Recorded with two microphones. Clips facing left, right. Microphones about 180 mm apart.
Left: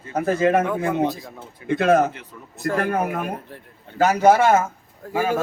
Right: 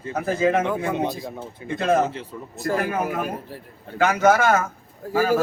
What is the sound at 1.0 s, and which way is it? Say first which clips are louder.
Speech: left 1 dB; centre (ahead or behind).